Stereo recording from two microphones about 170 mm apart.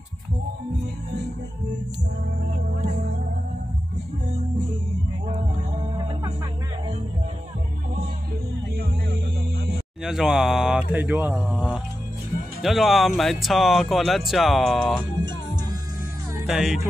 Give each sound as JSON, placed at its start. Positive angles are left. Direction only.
{"t": 10.0, "sound": "speech", "side_deg": -5}
{"t": 12.6, "sound": "speech", "side_deg": 0}
{"t": 16.4, "sound": "speech", "side_deg": 0}